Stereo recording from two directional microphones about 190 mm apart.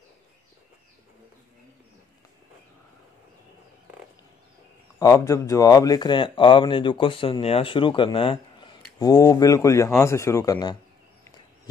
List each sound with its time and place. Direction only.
4.9 s speech: 15° left (ahead or behind)